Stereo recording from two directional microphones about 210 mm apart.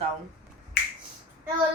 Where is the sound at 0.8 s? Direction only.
50° left (ahead or behind).